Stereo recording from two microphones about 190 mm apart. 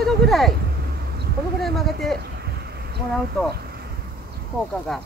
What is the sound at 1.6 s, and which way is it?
Speech, centre (ahead or behind).